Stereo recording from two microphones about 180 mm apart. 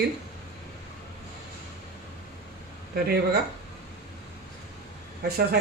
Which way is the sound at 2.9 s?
60° right (ahead or behind).